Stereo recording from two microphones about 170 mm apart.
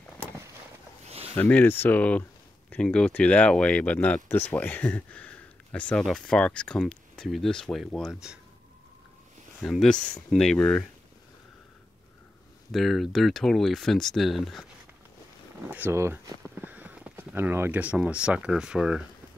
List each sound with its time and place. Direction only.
1.0 s a sound: 35° right (ahead or behind)
1.3 s speech: 10° left (ahead or behind)
9.6 s speech: centre (ahead or behind)
12.7 s speech: centre (ahead or behind)
15.7 s speech: 15° right (ahead or behind)